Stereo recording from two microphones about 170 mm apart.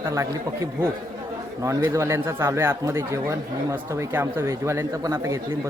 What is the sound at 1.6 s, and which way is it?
Speech, 15° right (ahead or behind).